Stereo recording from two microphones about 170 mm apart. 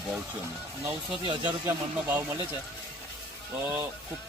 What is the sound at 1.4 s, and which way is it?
Speech, 10° right (ahead or behind).